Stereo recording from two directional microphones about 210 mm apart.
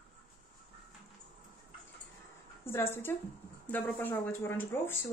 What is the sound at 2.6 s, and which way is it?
A woman's voice, 10° left (ahead or behind).